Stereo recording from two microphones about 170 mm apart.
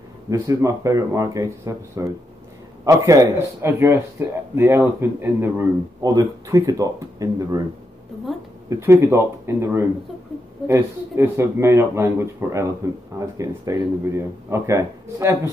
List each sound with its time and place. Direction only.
0.3 s speech: 20° right (ahead or behind)
8.6 s speech: 15° right (ahead or behind)